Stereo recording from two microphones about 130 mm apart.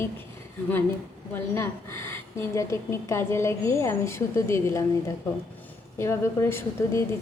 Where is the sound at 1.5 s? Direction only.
20° left (ahead or behind).